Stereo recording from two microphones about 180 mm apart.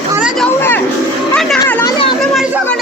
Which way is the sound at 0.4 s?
10° left (ahead or behind).